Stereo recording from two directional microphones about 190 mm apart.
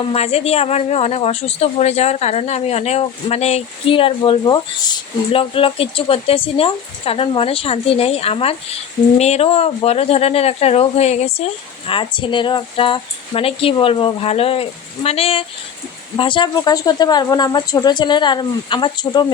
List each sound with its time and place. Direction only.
0.1 s a woman's voice: 35° left (ahead or behind)